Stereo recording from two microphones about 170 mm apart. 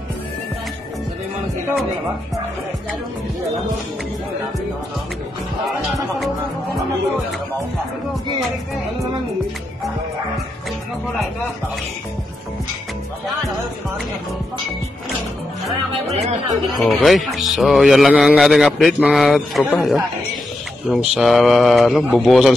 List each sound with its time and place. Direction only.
16.1 s speech: 40° right (ahead or behind)
16.7 s speech: centre (ahead or behind)